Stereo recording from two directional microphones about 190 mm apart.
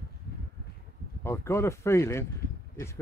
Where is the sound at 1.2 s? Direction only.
15° left (ahead or behind).